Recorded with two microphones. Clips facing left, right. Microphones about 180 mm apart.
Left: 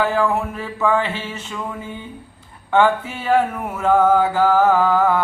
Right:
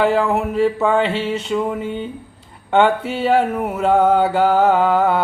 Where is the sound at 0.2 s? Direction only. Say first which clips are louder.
Right 4 dB; 30° right (ahead or behind).